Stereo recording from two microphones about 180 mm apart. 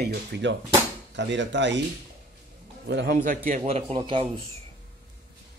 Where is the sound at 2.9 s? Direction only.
70° right (ahead or behind).